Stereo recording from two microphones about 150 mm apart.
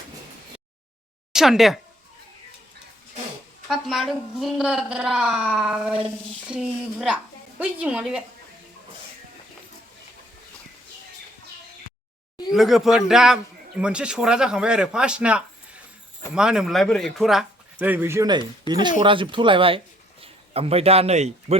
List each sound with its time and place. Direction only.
1.3 s a man's voice: 5° right (ahead or behind)
3.7 s a man's voice: centre (ahead or behind)
12.5 s a man's voice: centre (ahead or behind)
18.7 s a man's voice: 30° right (ahead or behind); by 21.6 s 45° right (ahead or behind)